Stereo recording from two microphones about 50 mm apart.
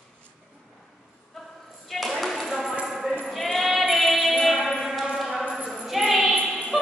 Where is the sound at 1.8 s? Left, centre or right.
Centre.